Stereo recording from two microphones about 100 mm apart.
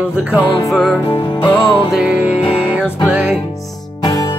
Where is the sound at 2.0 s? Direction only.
15° right (ahead or behind).